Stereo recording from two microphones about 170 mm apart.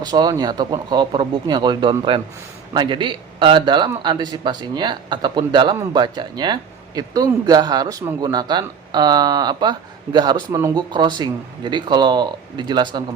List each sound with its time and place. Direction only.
0.0 s a man's voice: 25° right (ahead or behind)